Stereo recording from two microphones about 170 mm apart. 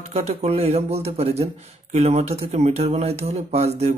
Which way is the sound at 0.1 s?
40° right (ahead or behind).